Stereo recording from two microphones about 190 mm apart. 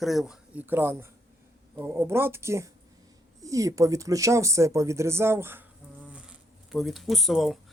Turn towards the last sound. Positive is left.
turn(degrees=0)  # may be behind; listen again after turning